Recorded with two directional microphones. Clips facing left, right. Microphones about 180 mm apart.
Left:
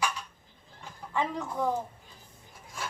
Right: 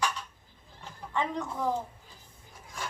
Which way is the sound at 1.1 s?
5° left (ahead or behind).